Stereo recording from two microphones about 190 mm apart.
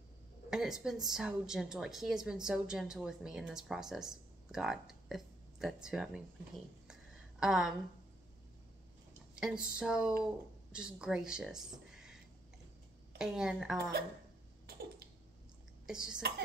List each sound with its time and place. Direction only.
0.5 s a woman's voice: 5° right (ahead or behind)
6.9 s a sound: 5° right (ahead or behind)
9.3 s a woman's voice: 5° right (ahead or behind)
13.2 s a woman's voice: 5° right (ahead or behind)
14.7 s a sound: 55° right (ahead or behind)
15.9 s a woman's voice: 5° right (ahead or behind)
16.2 s speech: 60° right (ahead or behind)